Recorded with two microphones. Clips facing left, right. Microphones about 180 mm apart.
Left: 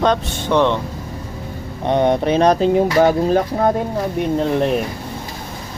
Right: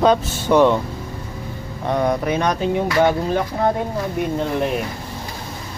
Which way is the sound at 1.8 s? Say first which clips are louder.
Left 4 dB; 25° left (ahead or behind).